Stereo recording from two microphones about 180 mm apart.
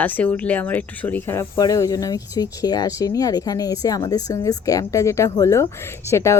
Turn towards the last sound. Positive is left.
turn(degrees=15)  # may be behind; listen again after turning